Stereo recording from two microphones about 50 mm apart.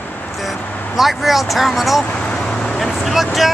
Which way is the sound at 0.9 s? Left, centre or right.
Centre.